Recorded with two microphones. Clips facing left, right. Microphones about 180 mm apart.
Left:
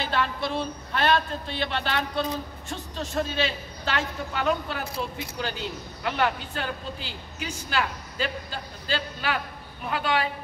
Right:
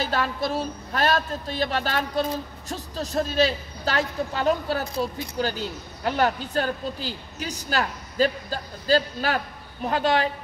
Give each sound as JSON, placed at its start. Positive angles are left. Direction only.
{"t": 0.0, "sound": "speech", "side_deg": -40}